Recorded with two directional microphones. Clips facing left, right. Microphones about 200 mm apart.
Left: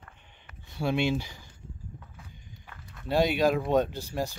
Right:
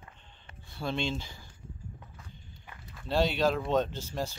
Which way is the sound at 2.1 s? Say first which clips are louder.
Left 1 dB; 10° left (ahead or behind).